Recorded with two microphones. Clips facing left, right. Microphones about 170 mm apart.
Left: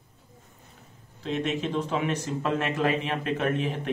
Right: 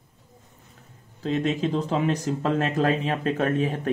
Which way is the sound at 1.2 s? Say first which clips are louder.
Right 4 dB; 40° right (ahead or behind).